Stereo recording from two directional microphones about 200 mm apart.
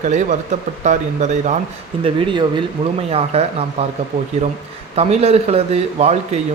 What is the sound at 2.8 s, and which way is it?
Speech, 25° right (ahead or behind).